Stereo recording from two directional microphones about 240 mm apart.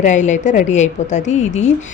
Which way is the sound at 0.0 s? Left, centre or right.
Left.